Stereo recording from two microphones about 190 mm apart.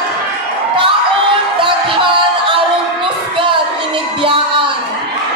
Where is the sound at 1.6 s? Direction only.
25° right (ahead or behind).